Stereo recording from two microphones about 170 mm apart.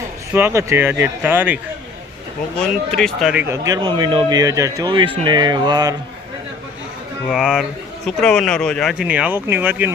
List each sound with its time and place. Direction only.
0.3 s speech: 15° right (ahead or behind)
2.6 s speech: 5° left (ahead or behind)
3.3 s speech: 15° right (ahead or behind)
7.3 s speech: centre (ahead or behind)